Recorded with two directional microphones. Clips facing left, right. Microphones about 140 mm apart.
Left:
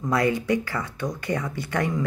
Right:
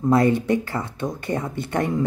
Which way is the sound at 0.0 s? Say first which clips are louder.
Right 5 dB; 25° right (ahead or behind).